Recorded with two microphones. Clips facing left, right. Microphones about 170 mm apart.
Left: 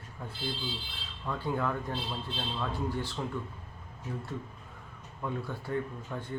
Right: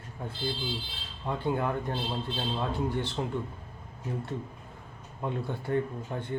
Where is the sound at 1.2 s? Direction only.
25° right (ahead or behind).